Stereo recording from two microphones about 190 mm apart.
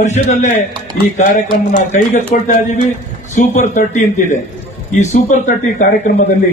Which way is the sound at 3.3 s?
40° left (ahead or behind).